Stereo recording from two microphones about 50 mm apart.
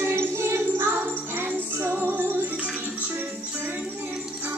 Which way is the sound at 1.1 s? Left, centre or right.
Right.